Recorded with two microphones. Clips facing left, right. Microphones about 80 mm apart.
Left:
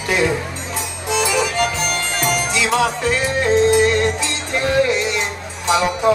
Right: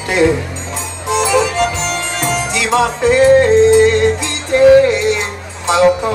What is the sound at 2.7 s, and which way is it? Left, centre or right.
Music, right.